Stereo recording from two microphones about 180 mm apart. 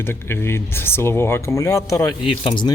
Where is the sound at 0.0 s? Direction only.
10° left (ahead or behind).